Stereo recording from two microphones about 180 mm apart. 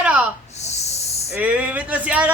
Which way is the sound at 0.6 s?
35° left (ahead or behind).